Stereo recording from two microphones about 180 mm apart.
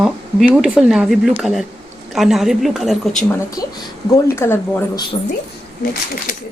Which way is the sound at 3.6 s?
20° left (ahead or behind).